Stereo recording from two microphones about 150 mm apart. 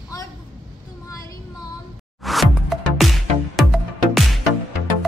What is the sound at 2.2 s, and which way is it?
Music, centre (ahead or behind).